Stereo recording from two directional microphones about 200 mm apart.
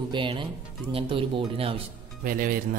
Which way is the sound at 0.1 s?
25° right (ahead or behind).